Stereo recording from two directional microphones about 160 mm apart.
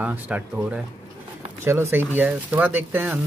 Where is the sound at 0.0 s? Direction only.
10° right (ahead or behind).